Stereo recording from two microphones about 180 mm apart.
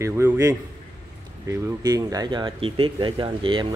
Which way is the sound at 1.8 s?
20° right (ahead or behind).